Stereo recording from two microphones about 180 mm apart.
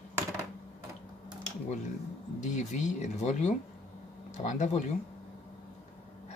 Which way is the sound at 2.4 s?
40° left (ahead or behind).